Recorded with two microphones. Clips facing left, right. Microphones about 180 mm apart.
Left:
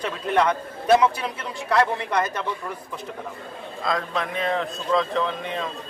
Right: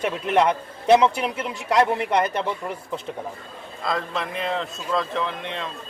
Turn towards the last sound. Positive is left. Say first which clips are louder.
# left 2 dB
turn(degrees=5)  # may be behind; listen again after turning